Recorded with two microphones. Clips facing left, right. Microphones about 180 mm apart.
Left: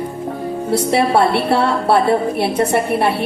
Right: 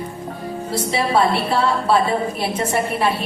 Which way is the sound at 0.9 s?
65° left (ahead or behind).